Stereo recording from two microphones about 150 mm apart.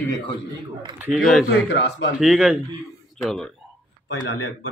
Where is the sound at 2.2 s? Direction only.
5° right (ahead or behind).